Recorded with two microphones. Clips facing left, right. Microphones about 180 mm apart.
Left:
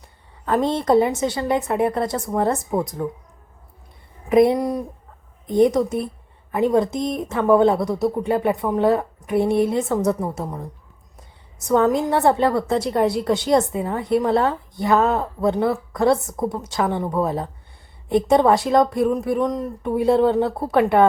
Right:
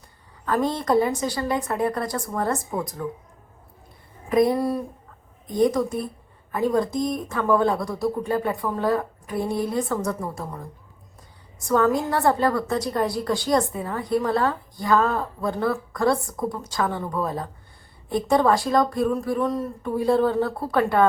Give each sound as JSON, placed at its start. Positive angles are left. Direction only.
{"t": 0.4, "sound": "a woman's voice", "side_deg": 25}
{"t": 4.3, "sound": "a woman's voice", "side_deg": 20}
{"t": 11.6, "sound": "a woman's voice", "side_deg": 20}